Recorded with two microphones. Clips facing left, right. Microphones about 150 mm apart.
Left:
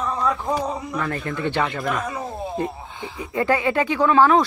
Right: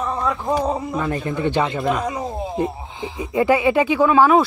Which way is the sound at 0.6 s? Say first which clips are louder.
Right 4 dB; 25° right (ahead or behind).